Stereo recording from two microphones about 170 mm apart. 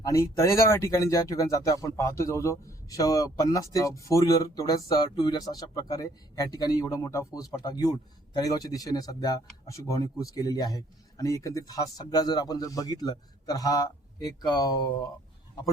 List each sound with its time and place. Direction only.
0.0 s speech: 20° left (ahead or behind)